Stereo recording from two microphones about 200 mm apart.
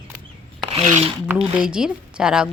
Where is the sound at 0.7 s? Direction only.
30° right (ahead or behind).